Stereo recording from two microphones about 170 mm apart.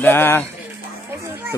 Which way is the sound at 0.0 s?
15° left (ahead or behind).